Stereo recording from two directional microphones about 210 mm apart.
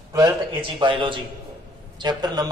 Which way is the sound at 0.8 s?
25° right (ahead or behind).